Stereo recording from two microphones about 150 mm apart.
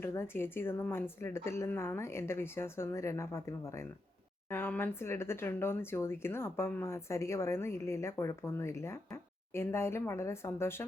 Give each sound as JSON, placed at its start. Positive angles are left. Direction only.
{"t": 0.0, "sound": "speech", "side_deg": 15}